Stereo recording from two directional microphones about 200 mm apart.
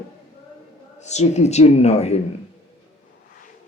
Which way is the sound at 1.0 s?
35° left (ahead or behind).